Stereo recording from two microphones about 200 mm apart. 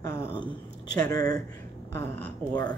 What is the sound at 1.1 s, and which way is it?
Speech, 20° left (ahead or behind).